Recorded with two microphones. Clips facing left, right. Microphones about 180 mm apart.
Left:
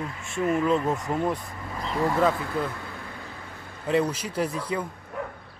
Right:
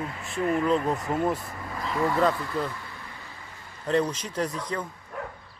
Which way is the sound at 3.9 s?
10° left (ahead or behind).